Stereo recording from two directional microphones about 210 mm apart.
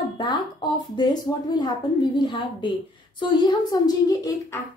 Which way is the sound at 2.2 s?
20° left (ahead or behind).